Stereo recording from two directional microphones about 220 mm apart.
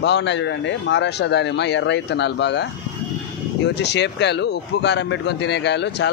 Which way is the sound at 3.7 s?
50° left (ahead or behind).